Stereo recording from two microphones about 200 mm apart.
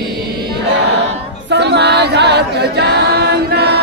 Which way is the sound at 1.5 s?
60° right (ahead or behind).